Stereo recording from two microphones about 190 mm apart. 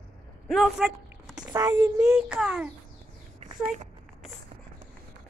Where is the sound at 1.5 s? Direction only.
20° right (ahead or behind).